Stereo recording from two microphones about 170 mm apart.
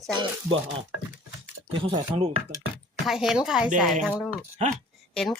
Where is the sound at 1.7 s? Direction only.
30° right (ahead or behind).